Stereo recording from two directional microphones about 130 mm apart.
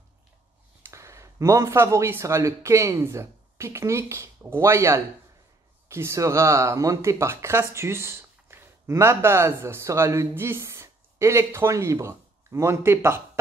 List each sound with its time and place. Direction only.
0.8 s speech: 20° right (ahead or behind)